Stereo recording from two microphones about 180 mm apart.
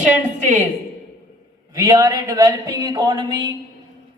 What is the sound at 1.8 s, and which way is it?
Speech, 20° right (ahead or behind).